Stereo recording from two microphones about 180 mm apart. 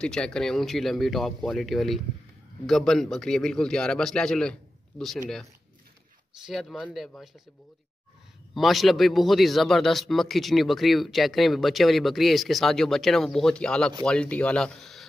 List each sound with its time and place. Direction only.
0.0 s a man's voice: 5° left (ahead or behind)
6.4 s a man's voice: centre (ahead or behind)
8.5 s a man's voice: centre (ahead or behind)